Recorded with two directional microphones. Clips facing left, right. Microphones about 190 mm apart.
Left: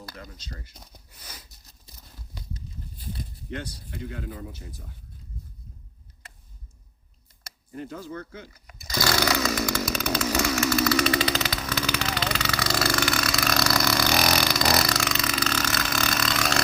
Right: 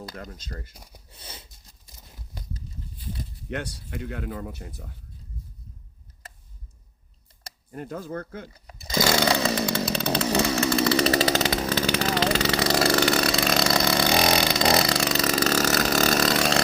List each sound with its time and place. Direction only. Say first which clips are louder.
0.2 s speech: right 4 dB; 50° right (ahead or behind)
0.7 s speech: right 1 dB; 10° right (ahead or behind)
1.1 s a sound: right 4 dB; 25° right (ahead or behind)
3.5 s speech: right 4 dB; 70° right (ahead or behind)
7.7 s speech: right 2 dB; 50° right (ahead or behind)
8.5 s chainsaw: right 5 dB; 30° right (ahead or behind)
11.4 s vehicle: right 5 dB; 30° right (ahead or behind)